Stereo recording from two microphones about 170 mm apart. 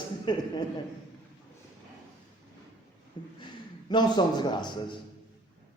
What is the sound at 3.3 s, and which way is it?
A man's voice, 25° left (ahead or behind).